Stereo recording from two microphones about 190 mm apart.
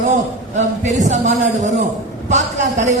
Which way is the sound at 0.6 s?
40° right (ahead or behind).